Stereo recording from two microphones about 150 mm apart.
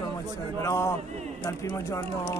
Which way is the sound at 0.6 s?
20° left (ahead or behind).